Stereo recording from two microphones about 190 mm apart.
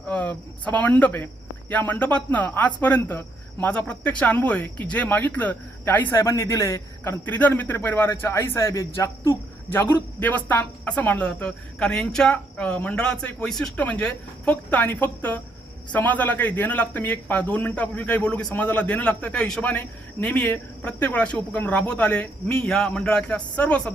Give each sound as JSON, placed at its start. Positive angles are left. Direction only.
{"t": 0.1, "sound": "a man's voice", "side_deg": 10}